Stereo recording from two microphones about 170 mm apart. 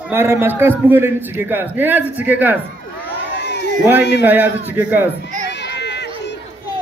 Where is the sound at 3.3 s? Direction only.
85° left.